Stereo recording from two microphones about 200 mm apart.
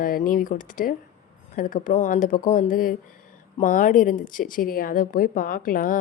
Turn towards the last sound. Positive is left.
turn(degrees=45)  # may be behind; listen again after turning